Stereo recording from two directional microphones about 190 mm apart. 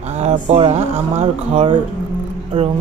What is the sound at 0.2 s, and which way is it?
Speech, 35° right (ahead or behind).